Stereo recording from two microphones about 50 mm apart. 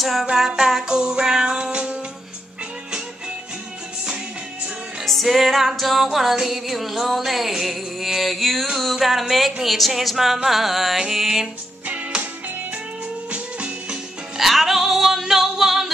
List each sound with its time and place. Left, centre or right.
0.0 s music: centre
5.0 s music: centre
13.3 s music: right
14.3 s music: centre